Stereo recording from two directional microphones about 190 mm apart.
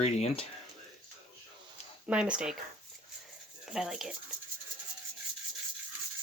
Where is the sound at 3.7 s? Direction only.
5° right (ahead or behind).